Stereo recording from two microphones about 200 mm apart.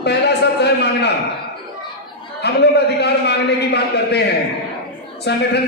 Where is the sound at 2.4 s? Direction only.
55° left (ahead or behind).